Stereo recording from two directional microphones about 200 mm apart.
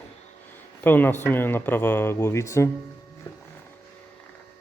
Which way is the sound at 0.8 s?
10° left (ahead or behind).